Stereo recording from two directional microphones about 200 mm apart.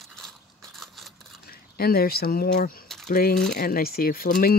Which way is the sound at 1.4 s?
50° left (ahead or behind).